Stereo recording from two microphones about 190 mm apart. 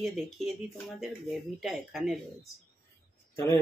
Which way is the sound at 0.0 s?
Centre (ahead or behind).